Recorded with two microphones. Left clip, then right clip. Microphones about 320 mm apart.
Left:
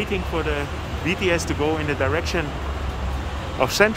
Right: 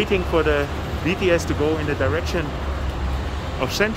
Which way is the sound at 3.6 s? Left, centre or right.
Centre.